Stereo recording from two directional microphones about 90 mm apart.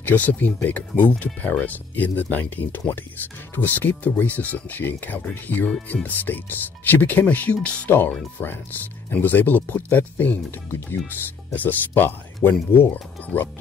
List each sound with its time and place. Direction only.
0.0 s speech: 20° left (ahead or behind)